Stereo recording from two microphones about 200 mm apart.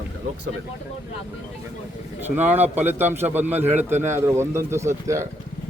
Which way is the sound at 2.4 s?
10° right (ahead or behind).